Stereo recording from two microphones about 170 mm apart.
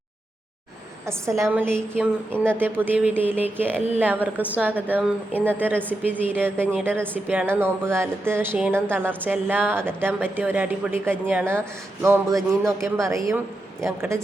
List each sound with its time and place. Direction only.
1.9 s speech: 15° right (ahead or behind)